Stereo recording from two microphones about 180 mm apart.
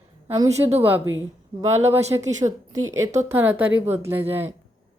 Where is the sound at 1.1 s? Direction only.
90° right.